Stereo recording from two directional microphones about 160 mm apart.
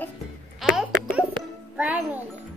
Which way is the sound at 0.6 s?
5° right (ahead or behind).